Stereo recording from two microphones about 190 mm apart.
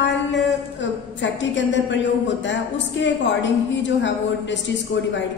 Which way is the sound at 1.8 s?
70° left (ahead or behind).